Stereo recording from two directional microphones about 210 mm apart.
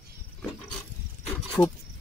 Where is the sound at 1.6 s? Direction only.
10° left (ahead or behind).